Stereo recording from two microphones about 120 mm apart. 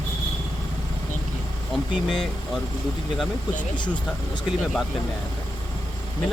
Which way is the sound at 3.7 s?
40° left (ahead or behind).